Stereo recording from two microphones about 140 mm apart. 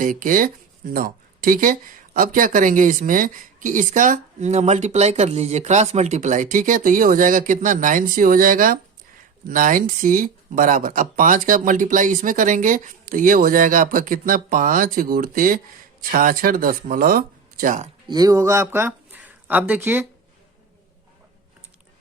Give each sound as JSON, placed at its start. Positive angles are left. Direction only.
{"t": 0.0, "sound": "speech", "side_deg": -70}
{"t": 0.9, "sound": "speech", "side_deg": -85}
{"t": 18.1, "sound": "speech", "side_deg": -25}